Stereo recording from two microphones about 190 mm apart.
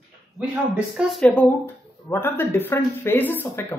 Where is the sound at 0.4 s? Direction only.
5° right (ahead or behind); by 3.7 s 10° left (ahead or behind).